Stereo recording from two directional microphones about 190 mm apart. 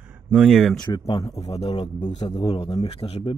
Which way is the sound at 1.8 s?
35° left (ahead or behind).